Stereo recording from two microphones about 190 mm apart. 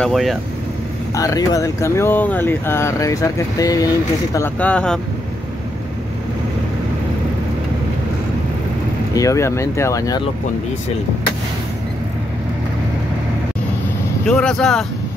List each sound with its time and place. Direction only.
0.0 s speech: centre (ahead or behind)
1.1 s speech: 20° left (ahead or behind)
9.1 s speech: 15° left (ahead or behind)
14.2 s speech: 5° left (ahead or behind)